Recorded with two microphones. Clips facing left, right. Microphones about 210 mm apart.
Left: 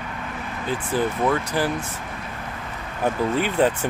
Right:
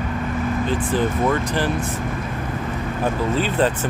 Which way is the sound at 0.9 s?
10° left (ahead or behind).